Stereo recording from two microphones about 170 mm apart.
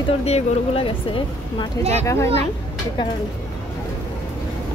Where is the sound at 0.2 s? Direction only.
35° left (ahead or behind).